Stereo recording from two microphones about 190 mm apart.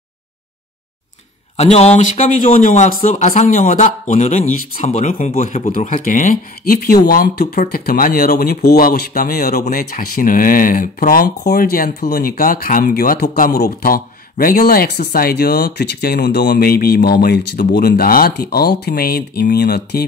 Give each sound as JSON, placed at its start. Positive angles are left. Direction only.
{"t": 1.6, "sound": "speech", "side_deg": 35}